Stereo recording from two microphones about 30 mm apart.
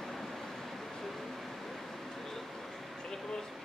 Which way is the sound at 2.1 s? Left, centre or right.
Centre.